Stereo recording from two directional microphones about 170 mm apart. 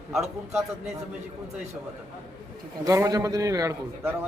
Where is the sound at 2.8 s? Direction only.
20° right (ahead or behind).